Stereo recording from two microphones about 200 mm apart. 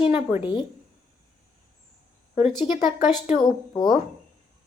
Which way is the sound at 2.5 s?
20° left (ahead or behind).